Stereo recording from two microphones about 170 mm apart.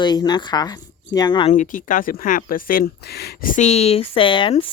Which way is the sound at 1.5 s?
50° left (ahead or behind).